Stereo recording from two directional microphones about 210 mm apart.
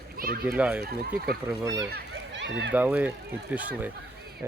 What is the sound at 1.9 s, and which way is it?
Run, 55° right (ahead or behind).